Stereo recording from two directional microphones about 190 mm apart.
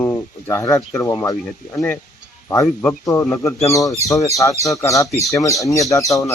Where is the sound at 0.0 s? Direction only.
15° left (ahead or behind).